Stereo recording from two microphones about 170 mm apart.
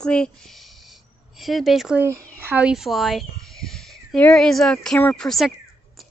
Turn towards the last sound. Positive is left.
turn(degrees=0)  # may be behind; listen again after turning